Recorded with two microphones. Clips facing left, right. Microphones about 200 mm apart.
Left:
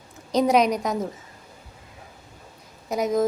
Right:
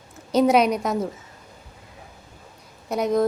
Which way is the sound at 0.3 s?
5° right (ahead or behind).